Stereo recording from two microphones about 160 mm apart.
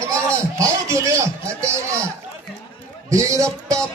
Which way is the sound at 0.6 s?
20° right (ahead or behind).